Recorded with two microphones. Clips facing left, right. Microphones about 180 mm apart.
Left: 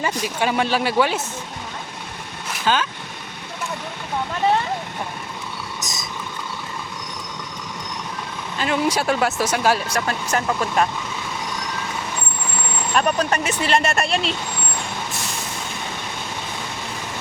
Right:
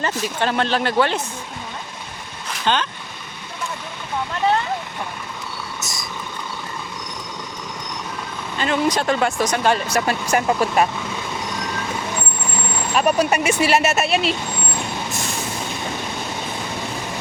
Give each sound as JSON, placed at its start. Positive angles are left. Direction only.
{"t": 0.0, "sound": "speech", "side_deg": 10}
{"t": 2.6, "sound": "speech", "side_deg": 5}
{"t": 5.8, "sound": "cricket", "side_deg": 20}
{"t": 8.5, "sound": "speech", "side_deg": 5}
{"t": 10.1, "sound": "speech", "side_deg": -10}
{"t": 12.9, "sound": "speech", "side_deg": -5}